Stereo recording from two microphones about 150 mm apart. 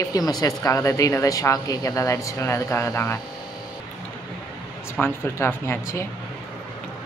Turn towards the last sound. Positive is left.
turn(degrees=15)  # may be behind; listen again after turning